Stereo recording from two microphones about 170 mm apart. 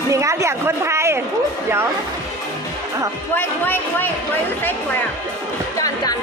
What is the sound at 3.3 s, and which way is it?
Speech, 10° left (ahead or behind).